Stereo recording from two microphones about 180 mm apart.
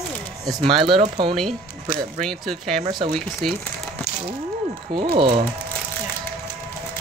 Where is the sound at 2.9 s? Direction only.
25° right (ahead or behind).